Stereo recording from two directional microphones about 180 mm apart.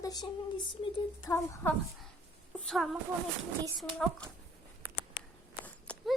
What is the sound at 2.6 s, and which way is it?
Speech, centre (ahead or behind).